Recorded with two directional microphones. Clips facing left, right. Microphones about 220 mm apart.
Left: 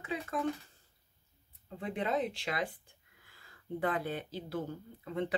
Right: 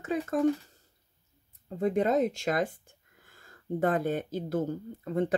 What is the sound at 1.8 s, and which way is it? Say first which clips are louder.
Speech: right 8 dB; 45° right (ahead or behind).